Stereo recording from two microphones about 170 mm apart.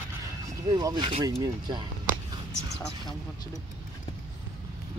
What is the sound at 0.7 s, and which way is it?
Speech, 25° right (ahead or behind).